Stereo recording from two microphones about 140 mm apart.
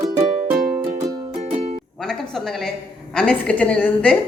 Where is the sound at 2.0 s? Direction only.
5° left (ahead or behind).